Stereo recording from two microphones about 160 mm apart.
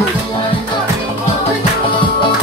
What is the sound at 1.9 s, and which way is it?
Music, 30° left (ahead or behind).